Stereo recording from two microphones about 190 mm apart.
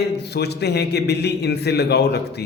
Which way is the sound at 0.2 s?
60° left (ahead or behind).